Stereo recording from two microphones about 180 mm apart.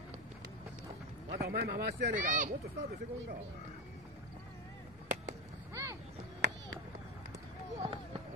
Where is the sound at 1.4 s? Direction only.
65° right (ahead or behind).